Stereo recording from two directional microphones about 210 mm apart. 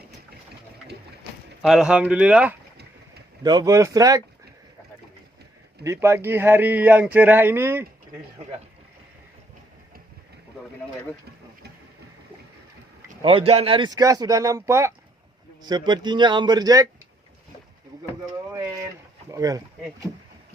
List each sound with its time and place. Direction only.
1.6 s speech: 5° right (ahead or behind)
3.4 s speech: 20° right (ahead or behind)
5.8 s speech: 15° right (ahead or behind)
13.2 s a man's voice: 25° right (ahead or behind)
18.5 s speech: 15° right (ahead or behind)